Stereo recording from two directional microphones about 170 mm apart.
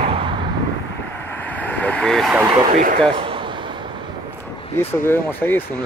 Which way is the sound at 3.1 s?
30° right (ahead or behind).